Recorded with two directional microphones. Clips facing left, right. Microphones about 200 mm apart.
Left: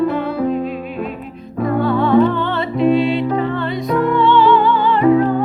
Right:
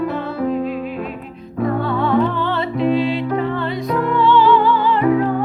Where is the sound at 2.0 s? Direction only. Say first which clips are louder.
Left 5 dB; 25° left (ahead or behind).